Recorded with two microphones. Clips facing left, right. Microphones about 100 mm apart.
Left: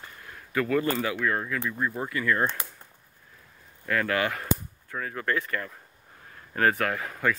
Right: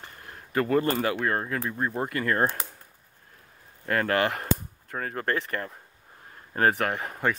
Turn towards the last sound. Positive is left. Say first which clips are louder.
# even
turn(degrees=-30)  # may be behind; listen again after turning